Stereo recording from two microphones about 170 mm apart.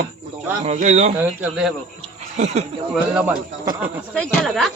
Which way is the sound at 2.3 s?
40° right (ahead or behind).